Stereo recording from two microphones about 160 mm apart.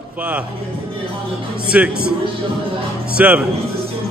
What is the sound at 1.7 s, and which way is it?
Speech, 5° right (ahead or behind).